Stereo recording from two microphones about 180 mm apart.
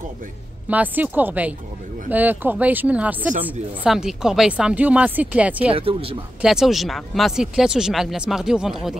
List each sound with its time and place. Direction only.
0.7 s speech: 10° right (ahead or behind)
5.8 s speech: 30° right (ahead or behind)
6.4 s speech: centre (ahead or behind)